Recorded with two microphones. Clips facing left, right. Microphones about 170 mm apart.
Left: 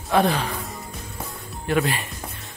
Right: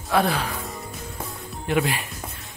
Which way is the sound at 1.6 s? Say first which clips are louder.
Left 1 dB; 15° right (ahead or behind).